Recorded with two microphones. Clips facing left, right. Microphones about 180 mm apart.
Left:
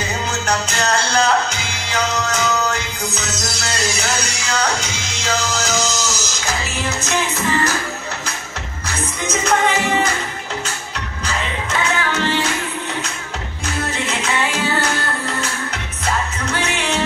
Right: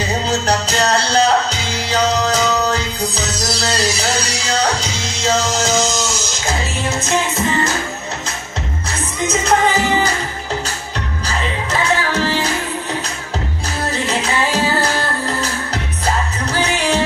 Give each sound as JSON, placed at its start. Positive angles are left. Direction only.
{"t": 0.3, "sound": "music", "side_deg": -35}
{"t": 11.2, "sound": "music", "side_deg": -35}
{"t": 14.0, "sound": "music", "side_deg": -35}